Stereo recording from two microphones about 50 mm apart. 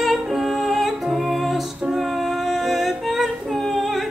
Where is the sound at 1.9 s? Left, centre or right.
Centre.